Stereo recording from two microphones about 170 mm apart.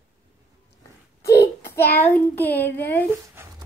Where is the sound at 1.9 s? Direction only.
10° left (ahead or behind).